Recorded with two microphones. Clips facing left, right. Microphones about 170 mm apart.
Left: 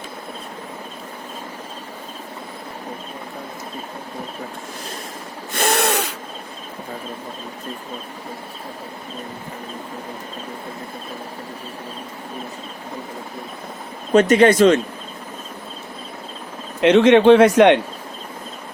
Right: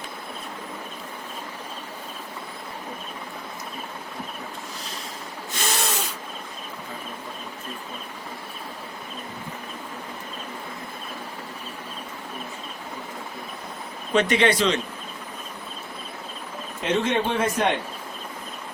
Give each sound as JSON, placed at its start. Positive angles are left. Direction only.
{"t": 5.5, "sound": "snort", "side_deg": 60}
{"t": 14.1, "sound": "speech", "side_deg": 45}
{"t": 16.8, "sound": "a man's voice", "side_deg": 80}